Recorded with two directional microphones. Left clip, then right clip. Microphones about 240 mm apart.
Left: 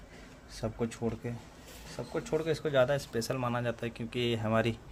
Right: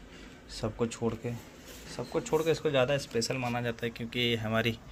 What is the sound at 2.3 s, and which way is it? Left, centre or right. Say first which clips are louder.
Speech: right 1 dB; centre.